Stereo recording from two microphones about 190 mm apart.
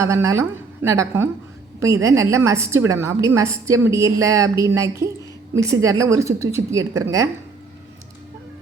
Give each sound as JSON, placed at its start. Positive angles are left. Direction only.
{"t": 0.0, "sound": "a woman's voice", "side_deg": -15}